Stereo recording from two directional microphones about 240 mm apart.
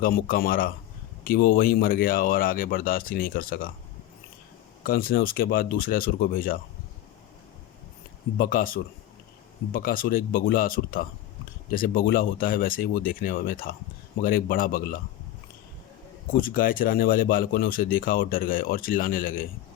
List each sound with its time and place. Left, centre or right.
0.0 s speech: left
4.8 s speech: left
8.4 s speech: left
16.4 s speech: left